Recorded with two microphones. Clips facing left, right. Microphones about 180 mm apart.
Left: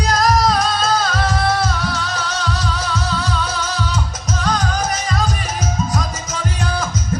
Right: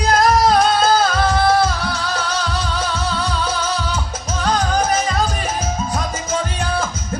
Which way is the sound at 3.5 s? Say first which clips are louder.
Right 2 dB; 30° right (ahead or behind).